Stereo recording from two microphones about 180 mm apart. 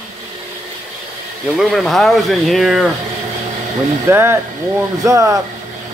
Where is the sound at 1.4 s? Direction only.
Centre (ahead or behind).